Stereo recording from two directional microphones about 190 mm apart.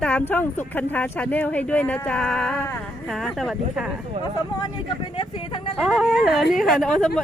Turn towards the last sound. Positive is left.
turn(degrees=0)  # may be behind; listen again after turning